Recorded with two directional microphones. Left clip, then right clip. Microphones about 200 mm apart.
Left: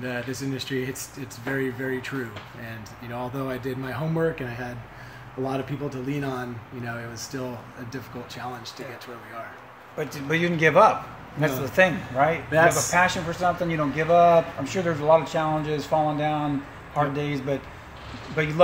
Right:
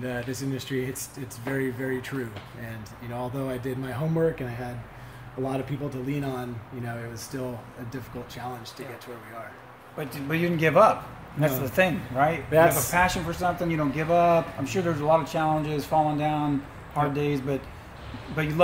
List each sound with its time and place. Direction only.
0.0 s a man's voice: 5° right (ahead or behind)
3.2 s a man's voice: 5° right (ahead or behind)
9.9 s a man's voice: 25° left (ahead or behind)
10.5 s a man's voice: 5° left (ahead or behind)
12.4 s speech: 35° right (ahead or behind)
12.9 s a man's voice: centre (ahead or behind)